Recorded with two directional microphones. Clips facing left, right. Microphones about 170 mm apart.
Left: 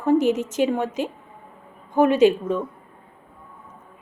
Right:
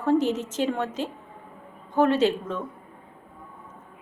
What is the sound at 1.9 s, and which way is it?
Speech, 10° left (ahead or behind).